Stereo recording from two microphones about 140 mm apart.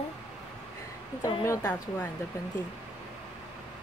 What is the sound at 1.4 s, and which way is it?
Speech, 15° left (ahead or behind).